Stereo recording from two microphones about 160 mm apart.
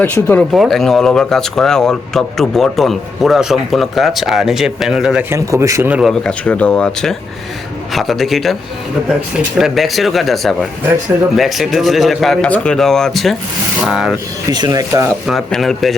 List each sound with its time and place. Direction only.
0.0 s speech: 10° left (ahead or behind)
0.5 s speech: centre (ahead or behind)
5.3 s a man's voice: 20° right (ahead or behind)
6.1 s speech: 5° left (ahead or behind)
9.6 s speech: centre (ahead or behind)
14.5 s speech: 25° right (ahead or behind)
15.3 s speech: centre (ahead or behind)